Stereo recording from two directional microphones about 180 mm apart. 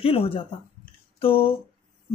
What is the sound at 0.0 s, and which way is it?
Speech, 30° left (ahead or behind).